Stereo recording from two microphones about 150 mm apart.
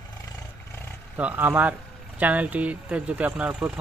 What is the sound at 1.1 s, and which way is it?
Speech, 10° right (ahead or behind).